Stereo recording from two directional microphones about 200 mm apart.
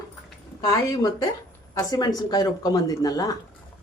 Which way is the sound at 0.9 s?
15° left (ahead or behind).